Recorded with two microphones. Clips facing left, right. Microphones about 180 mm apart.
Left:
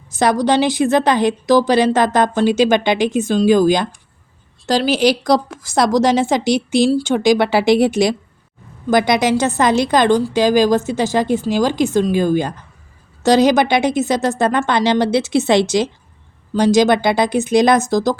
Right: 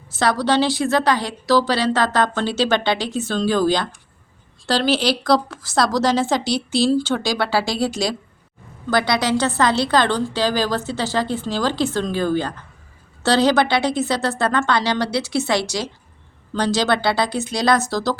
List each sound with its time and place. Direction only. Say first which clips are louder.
0.1 s a woman's voice: left 4 dB; 15° left (ahead or behind)
5.0 s a woman's voice: left 4 dB; 15° left (ahead or behind)
6.4 s speech: left 6 dB; 50° left (ahead or behind)
6.8 s a woman's voice: left 4 dB; 15° left (ahead or behind)